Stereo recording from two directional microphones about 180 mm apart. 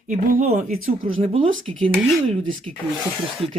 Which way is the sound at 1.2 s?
30° right (ahead or behind).